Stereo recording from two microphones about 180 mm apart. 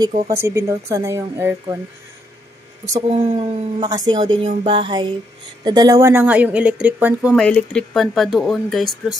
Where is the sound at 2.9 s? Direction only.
25° right (ahead or behind); by 7.3 s 10° right (ahead or behind).